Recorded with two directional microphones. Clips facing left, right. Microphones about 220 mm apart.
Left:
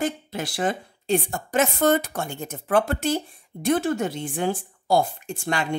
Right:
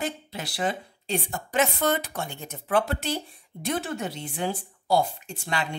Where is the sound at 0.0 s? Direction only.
50° left (ahead or behind).